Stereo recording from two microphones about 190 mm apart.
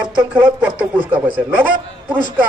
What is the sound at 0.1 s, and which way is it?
Speech, 5° right (ahead or behind).